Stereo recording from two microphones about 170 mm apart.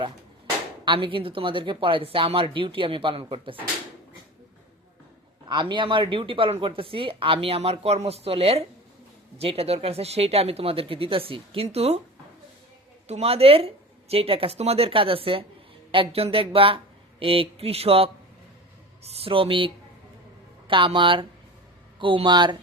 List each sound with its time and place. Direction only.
0.9 s speech: 30° right (ahead or behind)
5.5 s speech: 25° right (ahead or behind)
13.1 s speech: 35° right (ahead or behind)